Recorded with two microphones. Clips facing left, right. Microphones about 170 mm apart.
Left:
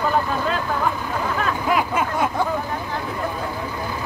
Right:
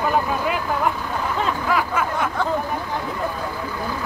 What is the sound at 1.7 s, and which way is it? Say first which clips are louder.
Snicker: left 3 dB; 20° left (ahead or behind).